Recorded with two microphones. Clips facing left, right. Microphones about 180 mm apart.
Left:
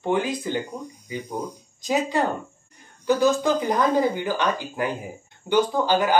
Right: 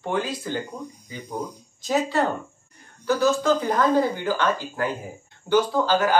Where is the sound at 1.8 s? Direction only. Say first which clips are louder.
Even; 15° left (ahead or behind).